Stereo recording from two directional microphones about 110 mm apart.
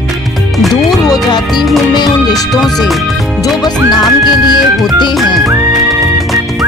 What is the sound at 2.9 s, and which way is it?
Speech, centre (ahead or behind).